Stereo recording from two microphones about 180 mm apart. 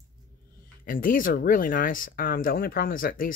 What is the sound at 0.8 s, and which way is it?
Speech, 50° left (ahead or behind).